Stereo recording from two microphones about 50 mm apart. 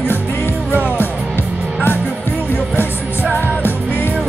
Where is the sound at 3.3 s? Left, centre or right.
Left.